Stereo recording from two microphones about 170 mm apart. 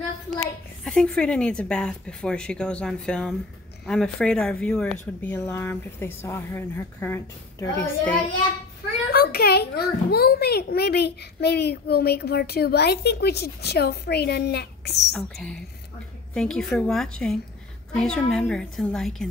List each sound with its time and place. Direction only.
0.8 s speech: 5° left (ahead or behind)
9.1 s a child's voice: 65° left (ahead or behind)
15.1 s speech: centre (ahead or behind)